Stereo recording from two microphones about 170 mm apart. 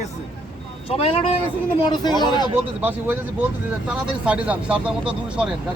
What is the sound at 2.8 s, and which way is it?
Speech, 10° right (ahead or behind).